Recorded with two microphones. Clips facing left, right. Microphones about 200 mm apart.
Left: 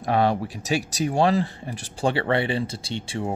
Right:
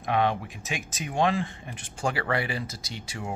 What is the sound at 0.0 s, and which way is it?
Speech, 40° left (ahead or behind).